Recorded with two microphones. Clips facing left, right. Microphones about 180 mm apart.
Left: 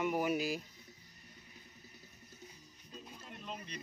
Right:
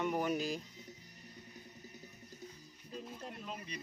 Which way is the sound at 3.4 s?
5° right (ahead or behind).